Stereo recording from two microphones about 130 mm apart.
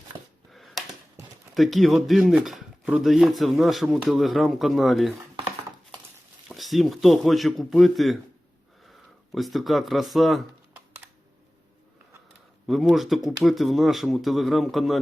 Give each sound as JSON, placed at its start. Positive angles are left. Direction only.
{"t": 0.5, "sound": "a sound", "side_deg": 0}
{"t": 1.5, "sound": "speech", "side_deg": 0}
{"t": 6.5, "sound": "speech", "side_deg": 0}
{"t": 12.6, "sound": "speech", "side_deg": 0}